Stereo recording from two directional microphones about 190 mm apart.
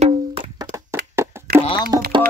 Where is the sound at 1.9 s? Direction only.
20° right (ahead or behind).